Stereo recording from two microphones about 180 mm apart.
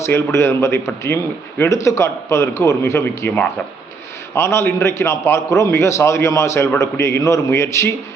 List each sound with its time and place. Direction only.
0.0 s a man's voice: 15° left (ahead or behind)